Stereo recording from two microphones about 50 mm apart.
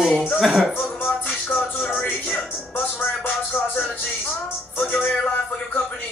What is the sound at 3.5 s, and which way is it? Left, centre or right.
Speech, left.